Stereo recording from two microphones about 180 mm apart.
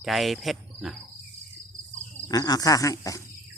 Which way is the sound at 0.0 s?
Centre (ahead or behind).